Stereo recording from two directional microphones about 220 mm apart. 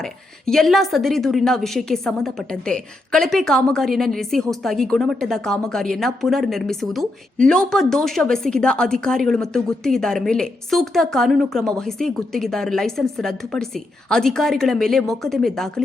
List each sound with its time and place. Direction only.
0.0 s a woman's voice: centre (ahead or behind)